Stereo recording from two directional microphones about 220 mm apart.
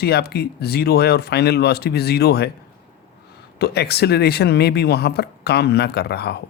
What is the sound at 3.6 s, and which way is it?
Speech, 45° left (ahead or behind).